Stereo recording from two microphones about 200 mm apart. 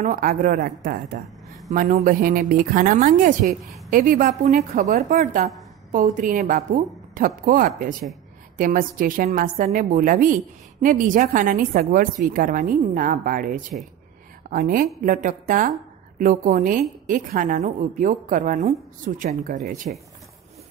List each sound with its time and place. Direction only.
0.0 s a woman's voice: 45° right (ahead or behind)
15.0 s a woman's voice: 40° right (ahead or behind)